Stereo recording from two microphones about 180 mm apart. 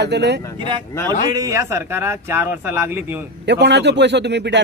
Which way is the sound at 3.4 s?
75° right (ahead or behind).